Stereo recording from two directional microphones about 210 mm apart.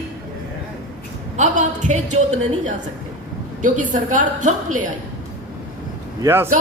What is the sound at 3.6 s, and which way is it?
A man's voice, 40° right (ahead or behind).